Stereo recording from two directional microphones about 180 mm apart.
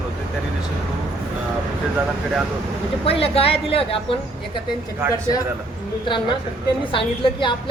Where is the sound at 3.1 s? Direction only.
30° left (ahead or behind).